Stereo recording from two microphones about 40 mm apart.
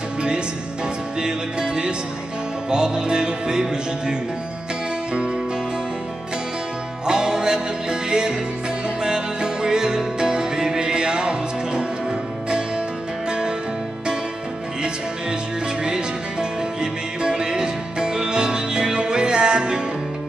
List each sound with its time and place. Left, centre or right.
1.2 s music: right
7.1 s music: centre
15.8 s music: centre